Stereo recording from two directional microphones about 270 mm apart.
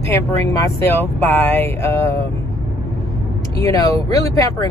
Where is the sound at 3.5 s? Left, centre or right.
Centre.